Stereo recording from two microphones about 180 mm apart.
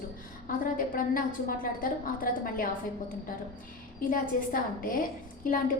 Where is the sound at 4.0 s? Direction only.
50° left (ahead or behind).